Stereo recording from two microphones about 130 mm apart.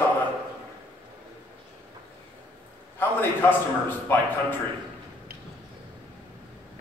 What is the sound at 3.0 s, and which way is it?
A man's voice, 15° left (ahead or behind).